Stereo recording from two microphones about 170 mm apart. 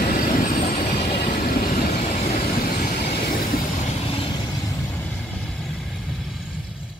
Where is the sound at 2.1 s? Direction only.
45° left (ahead or behind).